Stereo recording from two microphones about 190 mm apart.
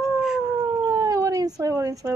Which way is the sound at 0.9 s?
20° right (ahead or behind).